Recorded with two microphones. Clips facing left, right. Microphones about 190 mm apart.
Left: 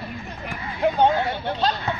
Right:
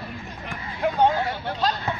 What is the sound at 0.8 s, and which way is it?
Speech, 25° left (ahead or behind).